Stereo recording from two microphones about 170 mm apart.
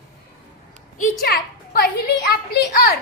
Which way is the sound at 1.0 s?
60° left (ahead or behind).